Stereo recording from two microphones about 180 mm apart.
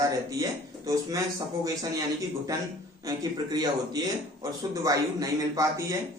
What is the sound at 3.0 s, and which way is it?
A man's voice, 20° right (ahead or behind).